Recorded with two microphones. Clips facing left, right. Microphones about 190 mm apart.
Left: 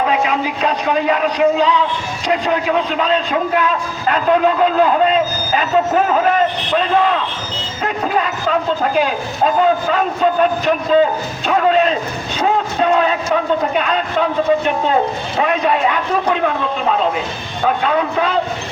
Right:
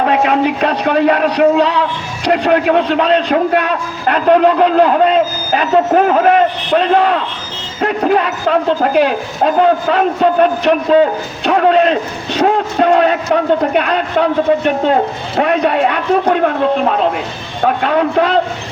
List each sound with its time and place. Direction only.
0.0 s a man's voice: 60° right (ahead or behind)